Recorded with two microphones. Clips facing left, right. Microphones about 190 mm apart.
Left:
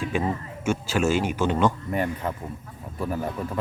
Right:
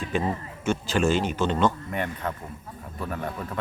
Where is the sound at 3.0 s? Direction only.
5° left (ahead or behind).